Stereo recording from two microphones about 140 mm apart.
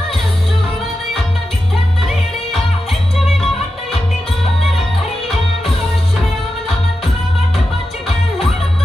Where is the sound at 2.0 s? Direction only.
Centre (ahead or behind).